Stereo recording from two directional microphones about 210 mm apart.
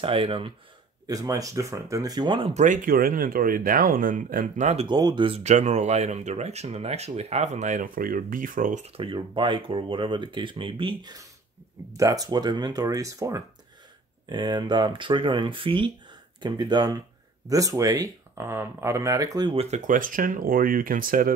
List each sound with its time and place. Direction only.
0.0 s speech: 25° right (ahead or behind)
2.6 s speech: 40° right (ahead or behind)
4.8 s speech: 20° right (ahead or behind); by 21.3 s 40° right (ahead or behind)